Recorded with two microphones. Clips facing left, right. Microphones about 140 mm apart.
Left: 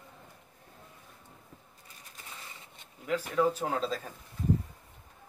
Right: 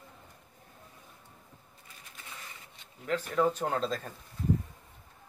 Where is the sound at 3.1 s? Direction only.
5° left (ahead or behind).